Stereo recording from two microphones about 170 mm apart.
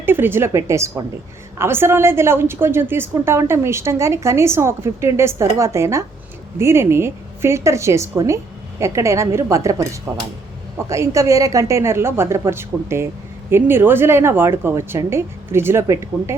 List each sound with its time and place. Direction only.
0.0 s a woman's voice: 15° right (ahead or behind)